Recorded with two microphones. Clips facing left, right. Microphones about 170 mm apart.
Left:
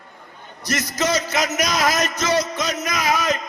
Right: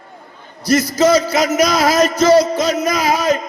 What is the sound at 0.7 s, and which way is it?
Speech, 30° right (ahead or behind).